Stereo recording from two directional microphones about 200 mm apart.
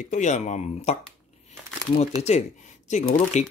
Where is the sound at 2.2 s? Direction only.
35° left (ahead or behind).